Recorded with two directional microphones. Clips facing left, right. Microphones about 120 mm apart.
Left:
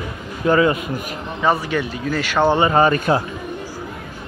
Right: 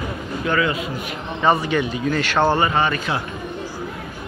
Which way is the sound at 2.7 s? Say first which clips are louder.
Left 6 dB; 40° left (ahead or behind).